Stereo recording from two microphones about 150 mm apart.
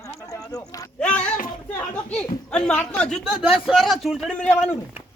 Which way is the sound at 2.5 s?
5° left (ahead or behind).